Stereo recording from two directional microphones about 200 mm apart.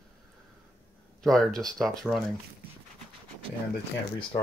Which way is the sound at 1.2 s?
Centre (ahead or behind).